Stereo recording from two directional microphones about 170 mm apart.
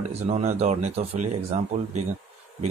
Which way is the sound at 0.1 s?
40° right (ahead or behind).